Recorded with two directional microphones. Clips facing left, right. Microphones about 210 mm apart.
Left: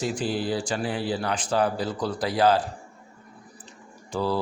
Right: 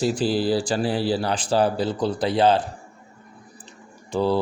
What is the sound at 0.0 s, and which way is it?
Speech, 30° right (ahead or behind).